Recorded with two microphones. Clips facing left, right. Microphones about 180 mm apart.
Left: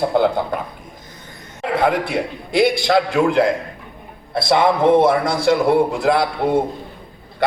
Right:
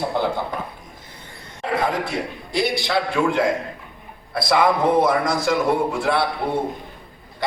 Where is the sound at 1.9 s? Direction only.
60° left (ahead or behind).